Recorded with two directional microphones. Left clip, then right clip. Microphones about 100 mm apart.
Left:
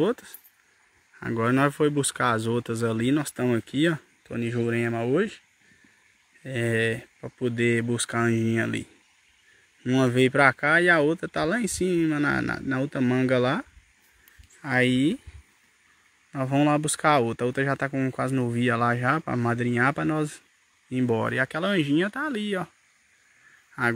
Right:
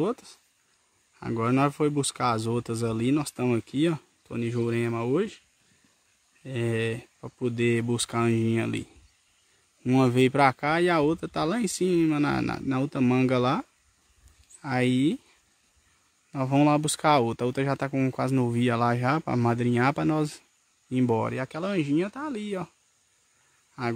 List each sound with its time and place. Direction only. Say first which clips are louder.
1.2 s speech: left 2 dB; 5° right (ahead or behind)
6.4 s speech: left 4 dB; 10° right (ahead or behind)
7.5 s speech: left 1 dB; 25° right (ahead or behind)
10.0 s speech: left 2 dB; 35° right (ahead or behind)
10.6 s speech: left 4 dB; 25° right (ahead or behind)
14.6 s speech: left 3 dB; 20° right (ahead or behind)
16.3 s speech: even; 25° right (ahead or behind)
21.3 s speech: left 6 dB; 5° left (ahead or behind)